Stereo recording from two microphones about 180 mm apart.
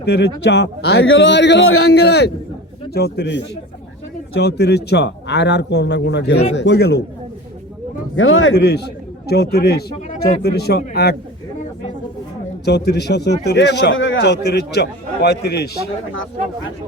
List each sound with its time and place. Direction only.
0.0 s a man's voice: 70° left (ahead or behind)
8.1 s a man's voice: 90° left; by 11.2 s 60° left (ahead or behind)
12.6 s a man's voice: 65° left (ahead or behind)